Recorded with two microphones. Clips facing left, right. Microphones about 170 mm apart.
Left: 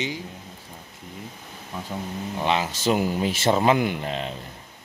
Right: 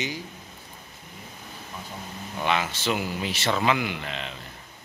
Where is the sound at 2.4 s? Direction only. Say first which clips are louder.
Left 1 dB; 30° left (ahead or behind).